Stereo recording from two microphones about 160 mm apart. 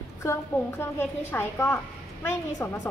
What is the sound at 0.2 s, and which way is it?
A woman's voice, 15° left (ahead or behind).